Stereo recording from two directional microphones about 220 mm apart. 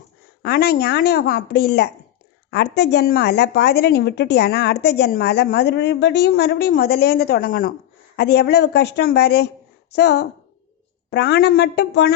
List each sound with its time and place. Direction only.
0.4 s a woman's voice: 45° left (ahead or behind)